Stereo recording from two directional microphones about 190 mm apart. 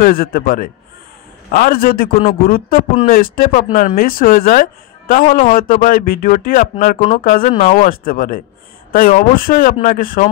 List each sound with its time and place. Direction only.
0.0 s speech: 50° left (ahead or behind)